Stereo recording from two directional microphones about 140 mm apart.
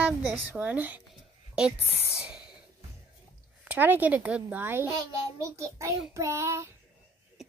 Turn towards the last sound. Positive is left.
turn(degrees=-20)  # may be behind; listen again after turning